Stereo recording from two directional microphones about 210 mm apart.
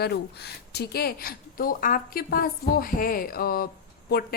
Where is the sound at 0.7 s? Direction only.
50° left (ahead or behind).